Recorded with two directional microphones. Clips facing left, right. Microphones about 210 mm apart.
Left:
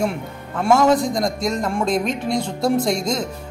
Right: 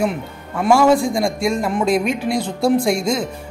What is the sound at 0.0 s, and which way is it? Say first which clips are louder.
A man's voice: right 2 dB; 5° right (ahead or behind).